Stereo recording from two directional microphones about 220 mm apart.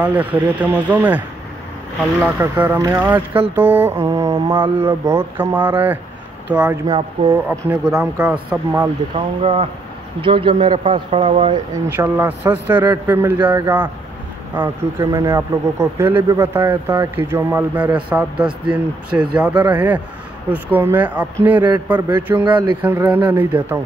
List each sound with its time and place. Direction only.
0.0 s speech: 5° right (ahead or behind)
9.1 s speech: 25° right (ahead or behind)
11.7 s speech: 10° right (ahead or behind)
22.4 s speech: 20° right (ahead or behind)
22.8 s speech: 10° right (ahead or behind)